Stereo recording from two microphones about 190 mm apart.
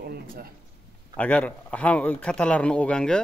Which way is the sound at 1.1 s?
10° left (ahead or behind).